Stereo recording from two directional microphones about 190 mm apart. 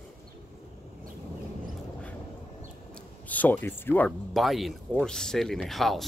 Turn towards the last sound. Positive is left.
turn(degrees=0)  # may be behind; listen again after turning